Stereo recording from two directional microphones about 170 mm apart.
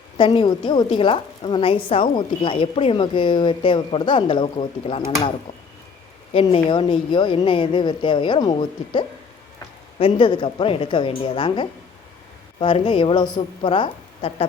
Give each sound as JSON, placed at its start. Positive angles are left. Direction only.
{"t": 0.2, "sound": "a woman's voice", "side_deg": 25}
{"t": 6.3, "sound": "a woman's voice", "side_deg": 30}